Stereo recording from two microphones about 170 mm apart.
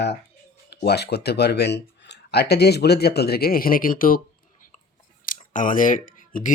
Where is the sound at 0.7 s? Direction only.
75° left (ahead or behind); by 4.2 s 55° left (ahead or behind).